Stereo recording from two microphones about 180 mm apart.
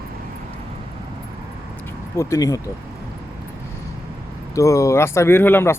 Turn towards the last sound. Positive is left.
turn(degrees=10)  # may be behind; listen again after turning